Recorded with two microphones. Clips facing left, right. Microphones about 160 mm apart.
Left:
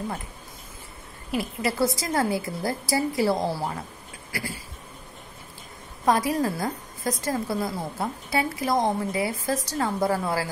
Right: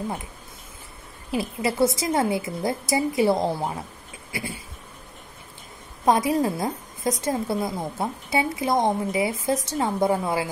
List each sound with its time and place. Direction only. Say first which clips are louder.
1.3 s a woman's voice: right 2 dB; 25° right (ahead or behind)
6.0 s a woman's voice: right 2 dB; 25° right (ahead or behind)